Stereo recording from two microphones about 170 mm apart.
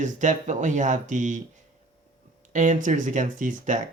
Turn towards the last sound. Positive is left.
turn(degrees=-50)  # may be behind; listen again after turning